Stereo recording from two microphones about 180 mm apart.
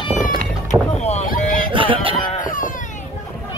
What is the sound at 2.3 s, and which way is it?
Baby cry, 45° left (ahead or behind).